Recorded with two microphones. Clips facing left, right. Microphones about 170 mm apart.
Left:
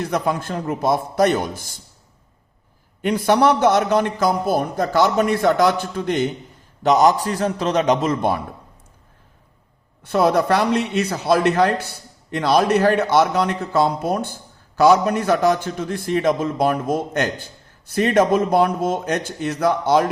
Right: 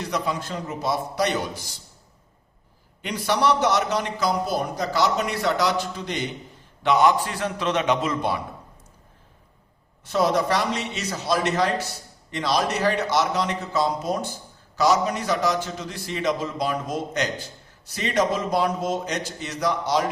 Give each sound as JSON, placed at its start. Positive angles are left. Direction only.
{"t": 0.0, "sound": "a man's voice", "side_deg": 50}
{"t": 3.0, "sound": "a man's voice", "side_deg": 50}
{"t": 10.0, "sound": "a man's voice", "side_deg": 60}